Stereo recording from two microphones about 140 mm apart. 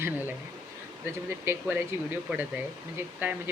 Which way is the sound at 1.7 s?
10° right (ahead or behind).